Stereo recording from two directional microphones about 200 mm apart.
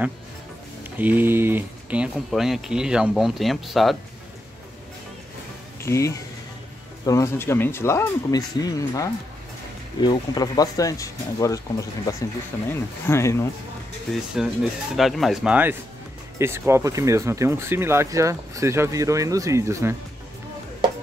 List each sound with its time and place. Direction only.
0.8 s speech: 10° right (ahead or behind)
5.8 s speech: 15° left (ahead or behind)
14.1 s speech: centre (ahead or behind)